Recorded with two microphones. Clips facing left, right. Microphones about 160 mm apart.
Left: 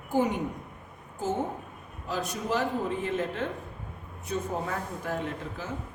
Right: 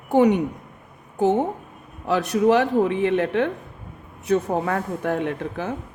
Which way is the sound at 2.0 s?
70° right (ahead or behind).